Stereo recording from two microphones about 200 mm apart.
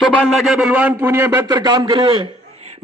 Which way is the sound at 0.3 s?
Centre (ahead or behind).